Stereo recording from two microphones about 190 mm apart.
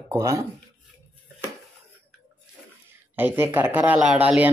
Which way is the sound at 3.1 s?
10° right (ahead or behind).